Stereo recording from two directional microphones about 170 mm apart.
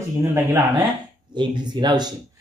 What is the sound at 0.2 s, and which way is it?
Speech, 15° right (ahead or behind).